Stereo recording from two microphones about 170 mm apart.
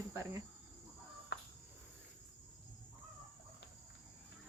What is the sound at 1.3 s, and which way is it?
Cricket, 75° left (ahead or behind).